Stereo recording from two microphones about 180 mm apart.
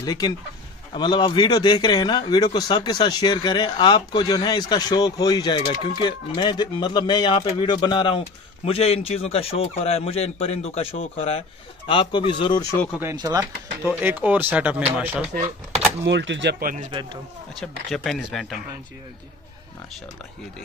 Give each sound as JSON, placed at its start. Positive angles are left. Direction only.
{"t": 0.0, "sound": "a man's voice", "side_deg": 20}
{"t": 13.1, "sound": "speech", "side_deg": -20}
{"t": 13.8, "sound": "speech", "side_deg": -10}
{"t": 16.1, "sound": "speech", "side_deg": -85}
{"t": 17.6, "sound": "speech", "side_deg": 0}